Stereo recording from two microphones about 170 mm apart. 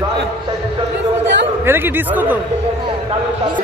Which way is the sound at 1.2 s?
90° right.